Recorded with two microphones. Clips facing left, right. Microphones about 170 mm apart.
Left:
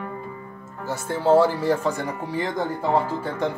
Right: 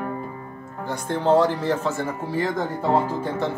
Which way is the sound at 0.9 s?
5° left (ahead or behind).